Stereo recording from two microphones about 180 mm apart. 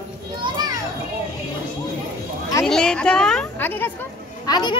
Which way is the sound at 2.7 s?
5° left (ahead or behind).